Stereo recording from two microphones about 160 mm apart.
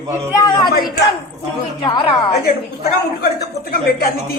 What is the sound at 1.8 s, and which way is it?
Speech, 35° left (ahead or behind).